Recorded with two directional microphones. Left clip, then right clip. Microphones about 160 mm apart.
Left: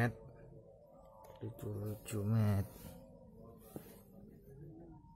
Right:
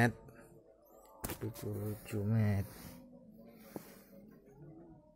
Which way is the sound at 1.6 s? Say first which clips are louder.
Right 3 dB; 10° right (ahead or behind).